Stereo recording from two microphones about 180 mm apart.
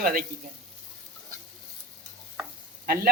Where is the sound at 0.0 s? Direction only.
50° right (ahead or behind).